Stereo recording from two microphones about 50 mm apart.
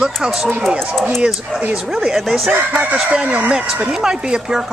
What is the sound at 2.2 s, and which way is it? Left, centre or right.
Speech, centre.